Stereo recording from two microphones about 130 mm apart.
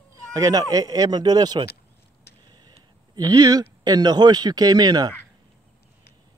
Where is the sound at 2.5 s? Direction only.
35° right (ahead or behind).